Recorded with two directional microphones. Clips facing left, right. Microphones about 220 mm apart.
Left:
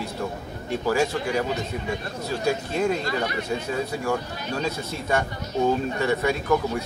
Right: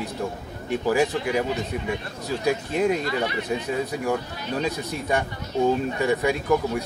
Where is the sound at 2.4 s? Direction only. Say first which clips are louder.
Right 2 dB; 15° right (ahead or behind).